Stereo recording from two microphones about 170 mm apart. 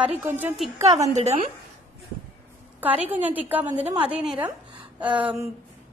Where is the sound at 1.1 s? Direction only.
40° right (ahead or behind).